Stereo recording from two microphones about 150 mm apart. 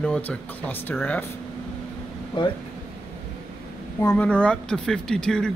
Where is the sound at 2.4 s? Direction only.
35° left (ahead or behind).